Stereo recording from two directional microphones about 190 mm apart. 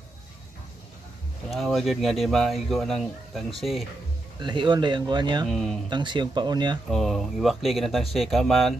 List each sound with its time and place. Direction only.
1.5 s speech: centre (ahead or behind)
4.4 s speech: 25° right (ahead or behind)
5.5 s speech: centre (ahead or behind)
5.9 s speech: 25° right (ahead or behind)
6.9 s speech: centre (ahead or behind)